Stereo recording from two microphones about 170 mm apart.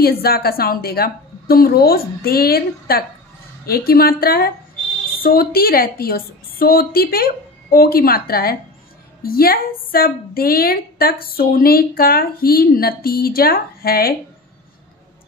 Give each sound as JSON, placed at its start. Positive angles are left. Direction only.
{"t": 0.0, "sound": "a woman's voice", "side_deg": 65}